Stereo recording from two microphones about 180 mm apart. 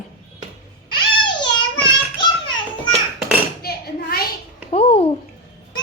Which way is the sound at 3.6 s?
60° left (ahead or behind).